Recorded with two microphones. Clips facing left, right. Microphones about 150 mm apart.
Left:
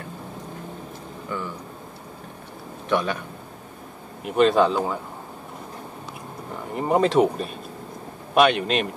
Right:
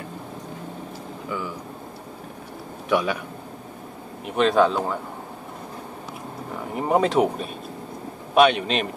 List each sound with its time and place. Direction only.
2.9 s speech: 10° right (ahead or behind)
4.2 s speech: centre (ahead or behind)
6.7 s speech: 5° right (ahead or behind)